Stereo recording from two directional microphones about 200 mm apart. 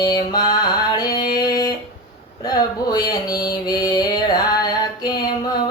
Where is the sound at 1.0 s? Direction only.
20° left (ahead or behind).